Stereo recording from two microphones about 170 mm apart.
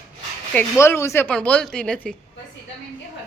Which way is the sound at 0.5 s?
15° left (ahead or behind).